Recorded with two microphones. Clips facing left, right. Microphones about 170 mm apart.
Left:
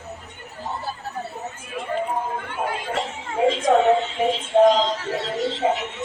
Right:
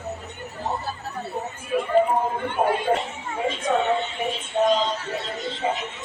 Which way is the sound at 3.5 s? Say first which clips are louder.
Left 5 dB; 90° left.